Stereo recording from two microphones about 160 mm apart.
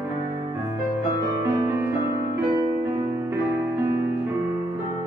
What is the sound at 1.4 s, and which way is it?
Music, 15° right (ahead or behind).